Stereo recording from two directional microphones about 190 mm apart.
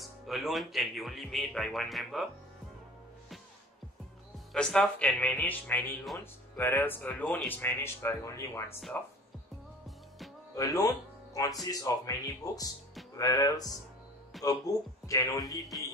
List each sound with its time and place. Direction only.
0.0 s speech: centre (ahead or behind)
4.5 s speech: centre (ahead or behind)
10.5 s speech: 15° left (ahead or behind)